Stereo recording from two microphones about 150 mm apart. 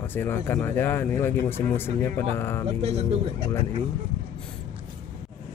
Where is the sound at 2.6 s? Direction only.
40° right (ahead or behind).